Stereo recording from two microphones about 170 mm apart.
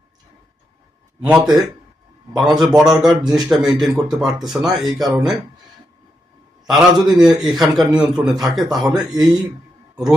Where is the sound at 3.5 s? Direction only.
Centre (ahead or behind).